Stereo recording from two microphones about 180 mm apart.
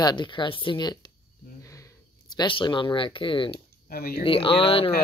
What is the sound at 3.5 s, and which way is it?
Speech, 55° left (ahead or behind).